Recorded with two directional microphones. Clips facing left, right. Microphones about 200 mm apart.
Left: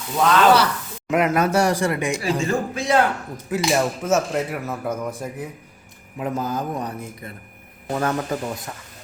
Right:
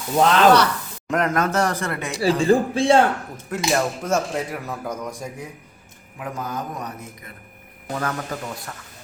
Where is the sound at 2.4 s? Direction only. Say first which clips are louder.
Right 6 dB; 30° right (ahead or behind).